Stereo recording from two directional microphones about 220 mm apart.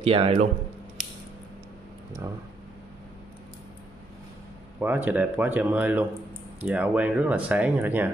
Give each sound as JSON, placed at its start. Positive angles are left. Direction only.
{"t": 0.0, "sound": "speech", "side_deg": -25}
{"t": 4.7, "sound": "speech", "side_deg": -10}